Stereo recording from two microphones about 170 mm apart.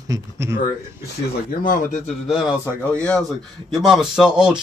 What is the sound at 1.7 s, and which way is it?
Speech, 50° left (ahead or behind).